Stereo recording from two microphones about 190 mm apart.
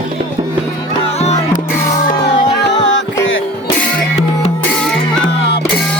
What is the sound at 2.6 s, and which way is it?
Music, 70° left (ahead or behind).